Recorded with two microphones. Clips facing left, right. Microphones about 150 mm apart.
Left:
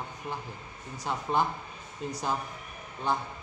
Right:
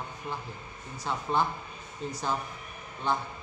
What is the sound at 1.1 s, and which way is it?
A man's voice, 15° left (ahead or behind).